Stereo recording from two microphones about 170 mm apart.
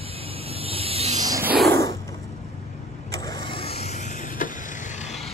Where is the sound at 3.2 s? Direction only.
25° left (ahead or behind); by 5.1 s 50° left (ahead or behind).